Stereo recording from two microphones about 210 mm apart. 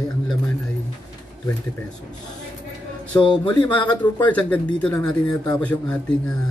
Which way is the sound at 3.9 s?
5° left (ahead or behind).